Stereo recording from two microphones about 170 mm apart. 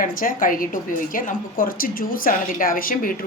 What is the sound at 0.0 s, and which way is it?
A woman's voice, 55° left (ahead or behind).